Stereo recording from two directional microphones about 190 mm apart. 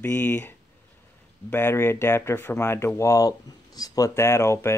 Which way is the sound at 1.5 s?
10° left (ahead or behind).